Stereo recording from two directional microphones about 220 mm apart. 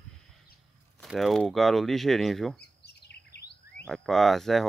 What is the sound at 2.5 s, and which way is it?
Chirp, 50° left (ahead or behind).